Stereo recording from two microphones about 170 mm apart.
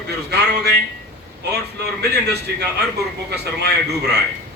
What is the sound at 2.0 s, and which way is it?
A man's voice, 75° right (ahead or behind).